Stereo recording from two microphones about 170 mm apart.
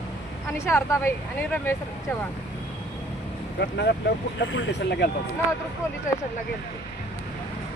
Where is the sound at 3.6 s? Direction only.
75° left (ahead or behind).